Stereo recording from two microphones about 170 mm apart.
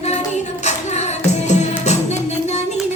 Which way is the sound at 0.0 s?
40° left (ahead or behind).